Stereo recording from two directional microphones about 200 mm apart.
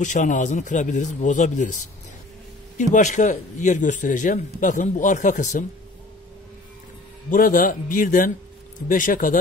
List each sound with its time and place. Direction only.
0.0 s speech: 40° left (ahead or behind)
2.8 s speech: 35° left (ahead or behind)
7.2 s a man's voice: 45° left (ahead or behind)